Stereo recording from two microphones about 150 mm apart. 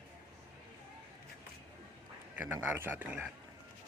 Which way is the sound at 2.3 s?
15° right (ahead or behind).